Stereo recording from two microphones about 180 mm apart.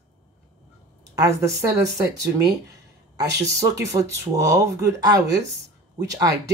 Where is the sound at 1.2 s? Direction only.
15° right (ahead or behind).